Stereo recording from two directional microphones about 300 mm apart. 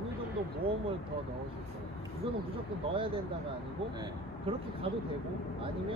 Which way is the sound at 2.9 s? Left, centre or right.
Centre.